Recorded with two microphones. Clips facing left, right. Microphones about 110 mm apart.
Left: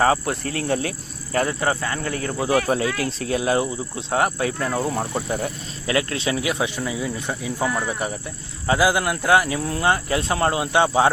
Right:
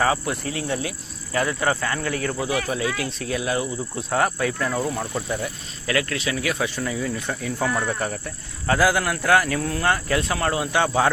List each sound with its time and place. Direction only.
0.0 s speech: 40° left (ahead or behind)
1.5 s speech: 25° left (ahead or behind)